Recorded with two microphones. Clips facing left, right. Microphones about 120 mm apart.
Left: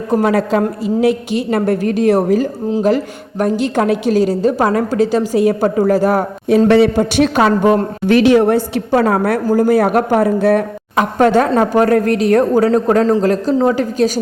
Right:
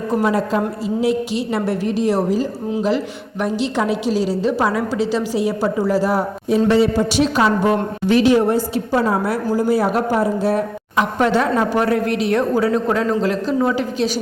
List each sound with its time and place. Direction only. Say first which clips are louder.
0.2 s a woman's voice: left 3 dB; 70° left (ahead or behind)
1.0 s a woman's voice: left 3 dB; 55° left (ahead or behind)
2.8 s a woman's voice: left 4 dB; 45° left (ahead or behind)
6.7 s a woman's voice: left 3 dB; 65° left (ahead or behind); by 14.1 s 40° left (ahead or behind)